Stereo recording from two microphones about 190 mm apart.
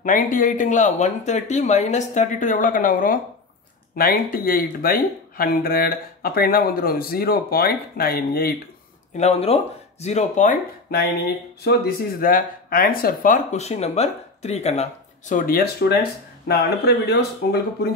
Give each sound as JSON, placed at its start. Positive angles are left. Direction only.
{"t": 0.0, "sound": "speech", "side_deg": 45}
{"t": 9.1, "sound": "speech", "side_deg": 35}